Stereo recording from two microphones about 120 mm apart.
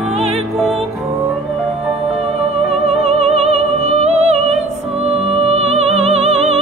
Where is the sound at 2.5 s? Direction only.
60° right (ahead or behind).